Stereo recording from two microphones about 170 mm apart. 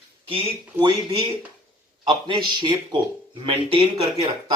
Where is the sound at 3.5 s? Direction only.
30° right (ahead or behind).